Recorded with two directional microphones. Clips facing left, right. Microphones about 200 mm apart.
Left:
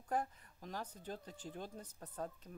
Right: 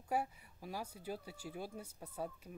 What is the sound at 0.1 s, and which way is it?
Speech, 10° right (ahead or behind).